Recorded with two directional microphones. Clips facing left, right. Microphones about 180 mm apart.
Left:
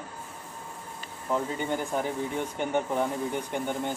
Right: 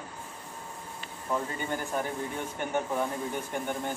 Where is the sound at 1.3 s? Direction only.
15° left (ahead or behind).